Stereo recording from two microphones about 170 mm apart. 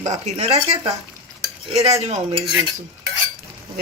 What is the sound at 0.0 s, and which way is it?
Speech, 40° right (ahead or behind).